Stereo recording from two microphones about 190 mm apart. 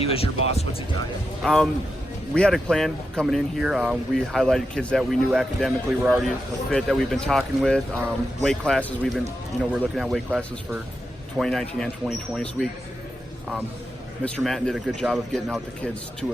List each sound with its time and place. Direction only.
0.0 s speech: 30° left (ahead or behind)
1.4 s speech: centre (ahead or behind)
14.3 s speech: 5° left (ahead or behind)